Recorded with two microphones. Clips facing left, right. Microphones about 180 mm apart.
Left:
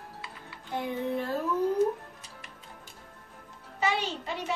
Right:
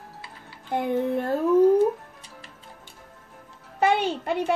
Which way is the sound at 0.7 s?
55° right (ahead or behind).